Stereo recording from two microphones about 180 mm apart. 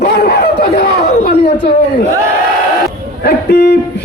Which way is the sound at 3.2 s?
60° left (ahead or behind).